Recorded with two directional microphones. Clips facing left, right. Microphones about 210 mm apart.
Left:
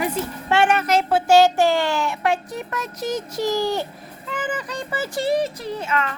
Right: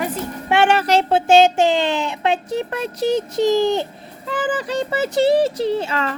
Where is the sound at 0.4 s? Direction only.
20° right (ahead or behind).